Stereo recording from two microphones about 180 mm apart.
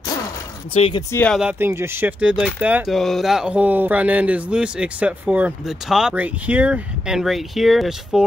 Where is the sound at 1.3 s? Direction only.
10° right (ahead or behind).